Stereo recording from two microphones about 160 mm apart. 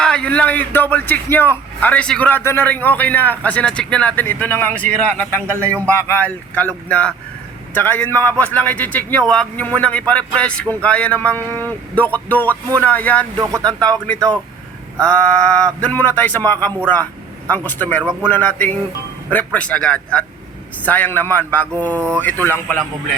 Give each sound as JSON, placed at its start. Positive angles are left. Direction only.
{"t": 0.0, "sound": "speech", "side_deg": 5}
{"t": 13.4, "sound": "speech", "side_deg": -20}
{"t": 13.8, "sound": "speech", "side_deg": 5}